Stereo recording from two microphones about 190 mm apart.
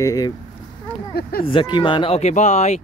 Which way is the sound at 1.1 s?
50° left (ahead or behind).